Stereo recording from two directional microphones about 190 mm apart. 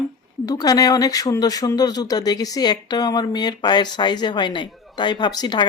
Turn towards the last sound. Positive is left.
turn(degrees=20)  # may be behind; listen again after turning